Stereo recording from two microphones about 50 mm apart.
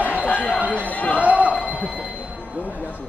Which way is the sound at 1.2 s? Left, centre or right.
Right.